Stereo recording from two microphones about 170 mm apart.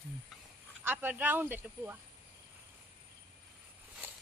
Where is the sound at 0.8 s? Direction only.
10° right (ahead or behind).